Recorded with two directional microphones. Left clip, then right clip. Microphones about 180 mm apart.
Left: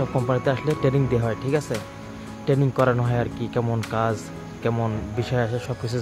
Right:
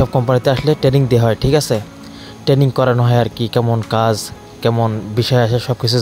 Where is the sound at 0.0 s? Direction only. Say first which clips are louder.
Right 8 dB; 35° right (ahead or behind).